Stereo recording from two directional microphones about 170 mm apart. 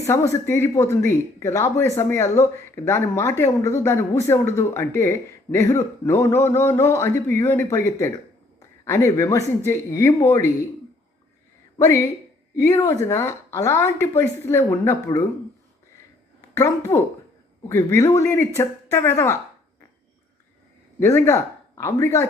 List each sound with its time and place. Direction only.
0.0 s speech: 15° left (ahead or behind)
11.8 s speech: 15° left (ahead or behind)
16.6 s speech: 15° left (ahead or behind)
21.0 s speech: 15° left (ahead or behind)